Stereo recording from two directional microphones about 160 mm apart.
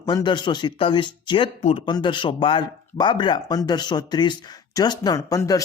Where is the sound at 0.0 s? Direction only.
25° left (ahead or behind).